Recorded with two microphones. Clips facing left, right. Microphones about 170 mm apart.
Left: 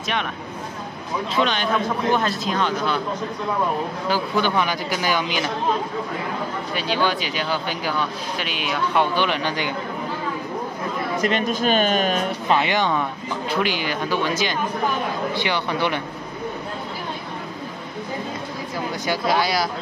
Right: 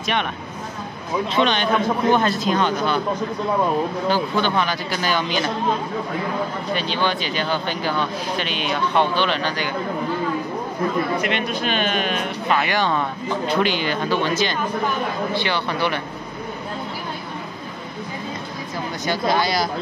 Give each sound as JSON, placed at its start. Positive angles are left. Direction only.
{"t": 1.3, "sound": "speech", "side_deg": 0}
{"t": 4.1, "sound": "speech", "side_deg": 10}
{"t": 6.7, "sound": "speech", "side_deg": 5}
{"t": 11.2, "sound": "speech", "side_deg": 40}
{"t": 12.4, "sound": "speech", "side_deg": 20}
{"t": 13.5, "sound": "speech", "side_deg": 10}
{"t": 19.0, "sound": "speech", "side_deg": 5}